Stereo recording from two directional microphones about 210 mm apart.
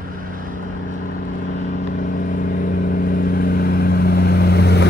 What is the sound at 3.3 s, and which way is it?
Vehicle, 45° left (ahead or behind).